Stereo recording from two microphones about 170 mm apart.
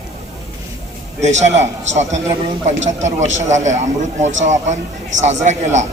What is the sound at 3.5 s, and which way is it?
A man's voice, 45° right (ahead or behind).